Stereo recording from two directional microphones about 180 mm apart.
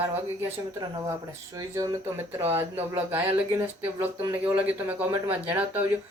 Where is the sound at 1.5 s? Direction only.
20° right (ahead or behind).